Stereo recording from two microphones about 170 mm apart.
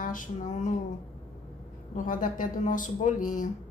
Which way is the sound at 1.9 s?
50° left (ahead or behind).